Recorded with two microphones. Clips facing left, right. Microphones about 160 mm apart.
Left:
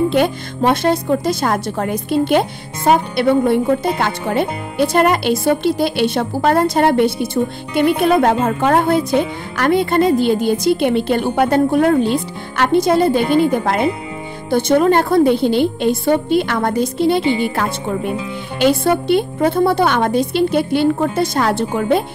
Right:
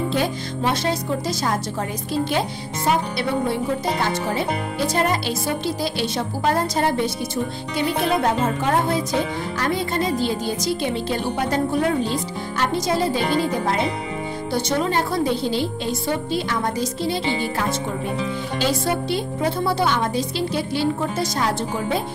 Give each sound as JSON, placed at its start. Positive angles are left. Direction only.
{"t": 0.1, "sound": "a woman's voice", "side_deg": 60}
{"t": 18.6, "sound": "a woman's voice", "side_deg": 60}